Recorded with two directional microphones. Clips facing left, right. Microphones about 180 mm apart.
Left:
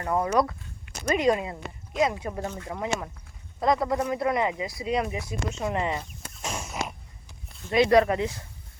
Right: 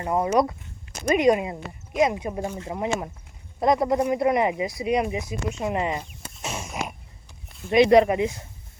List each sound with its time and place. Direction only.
0.0 s speech: 20° right (ahead or behind)
2.6 s speech: 25° right (ahead or behind); by 6.7 s 10° right (ahead or behind)
7.7 s speech: 20° right (ahead or behind)